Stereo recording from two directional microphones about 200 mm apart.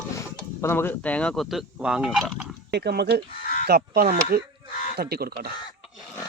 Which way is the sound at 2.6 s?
55° right (ahead or behind).